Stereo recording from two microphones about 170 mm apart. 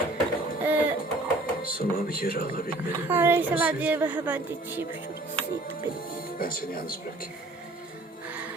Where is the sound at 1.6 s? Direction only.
60° left (ahead or behind).